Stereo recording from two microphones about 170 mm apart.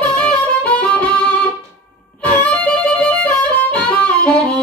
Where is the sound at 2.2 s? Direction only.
10° left (ahead or behind).